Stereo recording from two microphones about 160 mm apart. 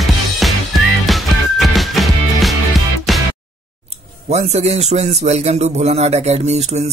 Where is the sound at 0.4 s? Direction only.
Centre (ahead or behind).